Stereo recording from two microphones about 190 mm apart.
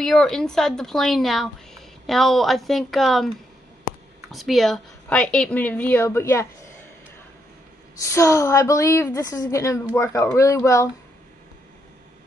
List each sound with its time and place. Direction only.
0.0 s a woman's voice: centre (ahead or behind)
8.0 s a woman's voice: 15° left (ahead or behind)